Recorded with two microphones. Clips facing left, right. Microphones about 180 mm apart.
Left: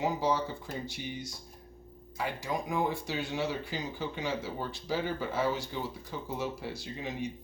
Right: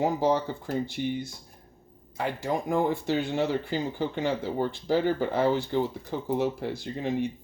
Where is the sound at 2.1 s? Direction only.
55° right (ahead or behind).